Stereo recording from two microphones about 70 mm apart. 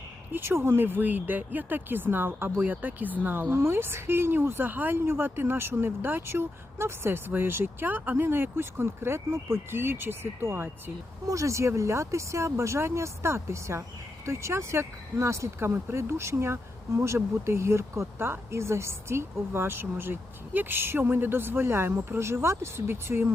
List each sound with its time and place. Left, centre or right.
0.3 s speech: right
11.3 s speech: right